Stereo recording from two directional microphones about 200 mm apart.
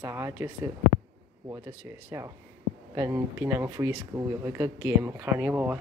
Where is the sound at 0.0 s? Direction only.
15° right (ahead or behind).